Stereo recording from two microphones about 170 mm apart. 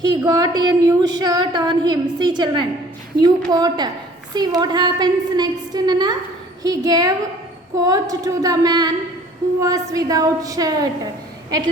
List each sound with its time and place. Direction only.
0.2 s speech: 20° right (ahead or behind)